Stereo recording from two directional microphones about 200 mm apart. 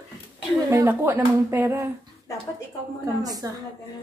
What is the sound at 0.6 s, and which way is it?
Speech, 10° right (ahead or behind).